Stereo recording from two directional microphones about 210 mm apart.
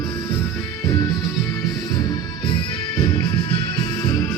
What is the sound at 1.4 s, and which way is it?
Music, 15° left (ahead or behind).